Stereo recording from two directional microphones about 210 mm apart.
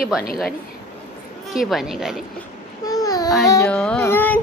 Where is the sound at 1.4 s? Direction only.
Centre (ahead or behind).